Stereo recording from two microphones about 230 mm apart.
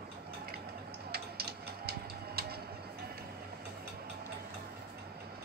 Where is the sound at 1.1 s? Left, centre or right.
Right.